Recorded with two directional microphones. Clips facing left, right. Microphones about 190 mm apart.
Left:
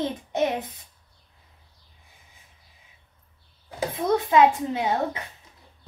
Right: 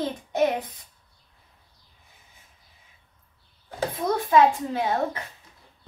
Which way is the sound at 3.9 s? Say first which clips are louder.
Left 1 dB; 20° left (ahead or behind).